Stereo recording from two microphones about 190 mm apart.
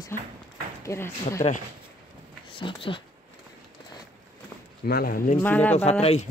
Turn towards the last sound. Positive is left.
turn(degrees=35)  # may be behind; listen again after turning